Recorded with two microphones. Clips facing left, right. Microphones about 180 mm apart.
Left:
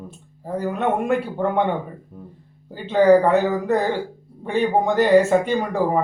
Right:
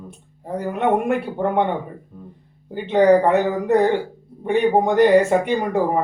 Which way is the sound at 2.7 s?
15° right (ahead or behind).